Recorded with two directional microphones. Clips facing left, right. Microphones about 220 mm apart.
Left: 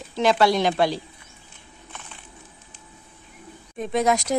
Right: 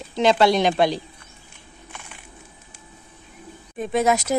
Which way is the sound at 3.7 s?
5° right (ahead or behind).